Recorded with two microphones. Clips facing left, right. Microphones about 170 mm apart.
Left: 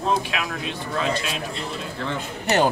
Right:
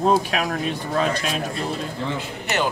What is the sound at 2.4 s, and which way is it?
Speech, 35° left (ahead or behind).